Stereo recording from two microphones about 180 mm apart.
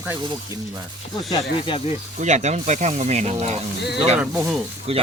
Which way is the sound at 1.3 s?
25° left (ahead or behind).